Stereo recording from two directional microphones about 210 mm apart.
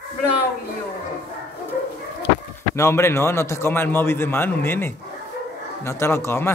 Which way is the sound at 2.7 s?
15° left (ahead or behind).